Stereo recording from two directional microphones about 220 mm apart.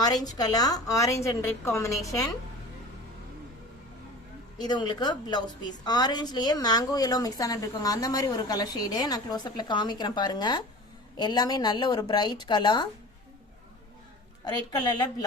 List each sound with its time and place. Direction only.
0.0 s a woman's voice: 15° left (ahead or behind)
4.5 s a woman's voice: 20° left (ahead or behind)
14.4 s a woman's voice: 20° left (ahead or behind)